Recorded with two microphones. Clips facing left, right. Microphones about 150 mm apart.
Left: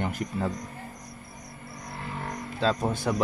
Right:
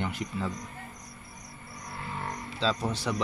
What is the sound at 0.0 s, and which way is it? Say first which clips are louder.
Speech: left 3 dB; 45° left (ahead or behind).